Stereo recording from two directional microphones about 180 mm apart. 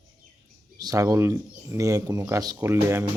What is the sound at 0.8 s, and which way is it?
A man's voice, 20° right (ahead or behind).